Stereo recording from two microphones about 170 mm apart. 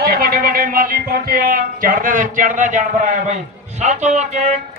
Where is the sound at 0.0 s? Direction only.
60° right (ahead or behind); by 4.6 s 45° right (ahead or behind).